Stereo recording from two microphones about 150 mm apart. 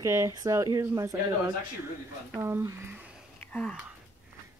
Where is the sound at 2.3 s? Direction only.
20° right (ahead or behind).